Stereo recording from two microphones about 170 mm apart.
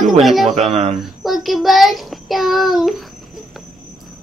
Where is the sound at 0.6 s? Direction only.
35° right (ahead or behind).